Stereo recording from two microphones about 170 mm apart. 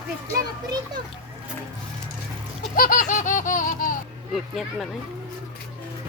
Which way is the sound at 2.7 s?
55° left (ahead or behind).